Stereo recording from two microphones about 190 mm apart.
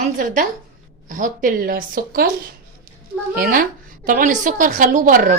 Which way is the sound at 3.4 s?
50° right (ahead or behind).